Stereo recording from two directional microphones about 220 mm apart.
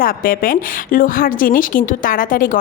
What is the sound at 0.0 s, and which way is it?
A woman's voice, 40° left (ahead or behind).